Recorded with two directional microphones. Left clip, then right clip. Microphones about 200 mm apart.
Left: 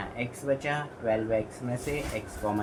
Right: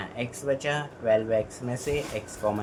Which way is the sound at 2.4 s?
40° right (ahead or behind).